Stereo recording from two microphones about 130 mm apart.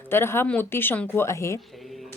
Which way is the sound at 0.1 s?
20° left (ahead or behind).